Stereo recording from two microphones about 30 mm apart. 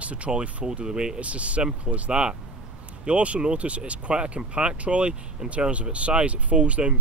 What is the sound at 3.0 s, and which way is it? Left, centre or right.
Speech, right.